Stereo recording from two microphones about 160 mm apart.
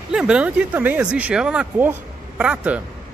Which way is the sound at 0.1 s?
5° right (ahead or behind).